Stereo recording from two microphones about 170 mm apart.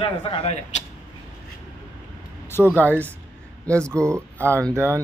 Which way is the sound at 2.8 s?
10° left (ahead or behind).